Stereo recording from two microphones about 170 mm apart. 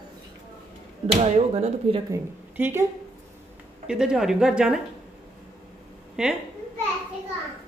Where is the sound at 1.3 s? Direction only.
40° right (ahead or behind).